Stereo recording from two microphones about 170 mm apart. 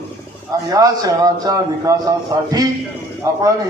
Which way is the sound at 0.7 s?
20° right (ahead or behind).